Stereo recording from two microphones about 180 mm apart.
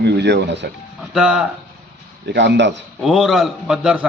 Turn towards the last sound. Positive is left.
turn(degrees=-5)  # may be behind; listen again after turning